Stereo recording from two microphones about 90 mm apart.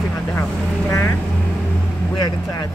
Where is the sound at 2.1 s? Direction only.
45° left (ahead or behind).